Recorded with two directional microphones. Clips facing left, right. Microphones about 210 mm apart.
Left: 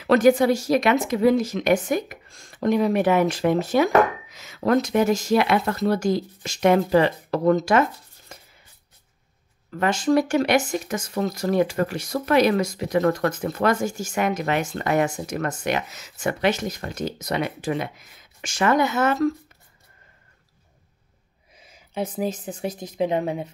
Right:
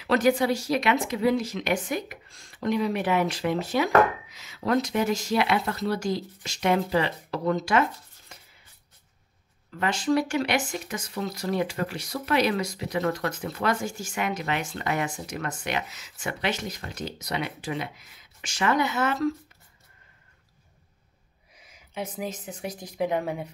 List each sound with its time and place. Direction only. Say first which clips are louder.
0.0 s speech: left 6 dB; 50° left (ahead or behind)
8.3 s a sound: left 6 dB; 45° left (ahead or behind)
9.7 s speech: left 4 dB; 45° left (ahead or behind)
21.5 s a woman's voice: left 6 dB; 30° left (ahead or behind)